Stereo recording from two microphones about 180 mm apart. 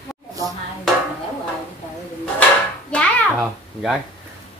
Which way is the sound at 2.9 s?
Centre (ahead or behind).